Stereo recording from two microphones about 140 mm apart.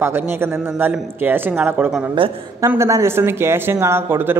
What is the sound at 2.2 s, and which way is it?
Speech, 40° right (ahead or behind).